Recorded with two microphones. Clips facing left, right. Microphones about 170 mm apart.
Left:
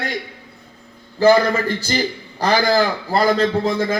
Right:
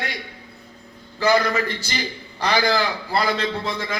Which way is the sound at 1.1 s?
35° left (ahead or behind).